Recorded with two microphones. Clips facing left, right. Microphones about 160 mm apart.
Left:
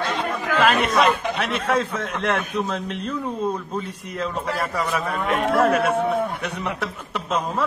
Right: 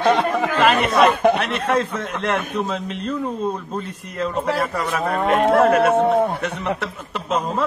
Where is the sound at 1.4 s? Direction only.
Centre (ahead or behind).